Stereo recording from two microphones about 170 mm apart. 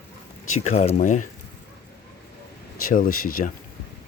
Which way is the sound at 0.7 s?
40° left (ahead or behind).